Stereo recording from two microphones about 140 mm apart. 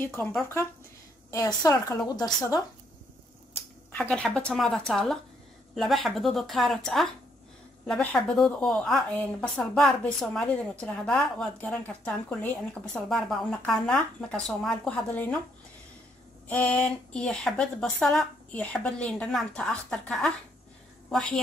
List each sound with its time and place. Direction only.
0.2 s a woman's voice: 10° left (ahead or behind)
1.3 s speech: 25° left (ahead or behind)
3.9 s a woman's voice: 10° left (ahead or behind)
16.4 s a woman's voice: 10° left (ahead or behind)